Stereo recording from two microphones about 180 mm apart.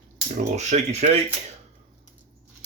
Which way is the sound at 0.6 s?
40° right (ahead or behind).